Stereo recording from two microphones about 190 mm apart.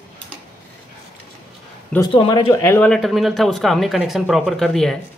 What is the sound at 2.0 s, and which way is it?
Speech, 25° left (ahead or behind).